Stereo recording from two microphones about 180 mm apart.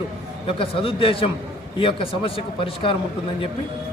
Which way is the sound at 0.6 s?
30° left (ahead or behind).